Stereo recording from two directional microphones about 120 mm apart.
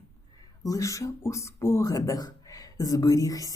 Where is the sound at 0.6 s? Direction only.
30° left (ahead or behind).